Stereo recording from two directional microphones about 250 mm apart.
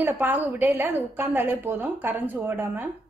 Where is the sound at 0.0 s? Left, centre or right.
Centre.